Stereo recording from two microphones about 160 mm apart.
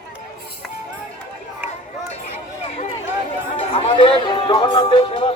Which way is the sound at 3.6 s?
35° left (ahead or behind).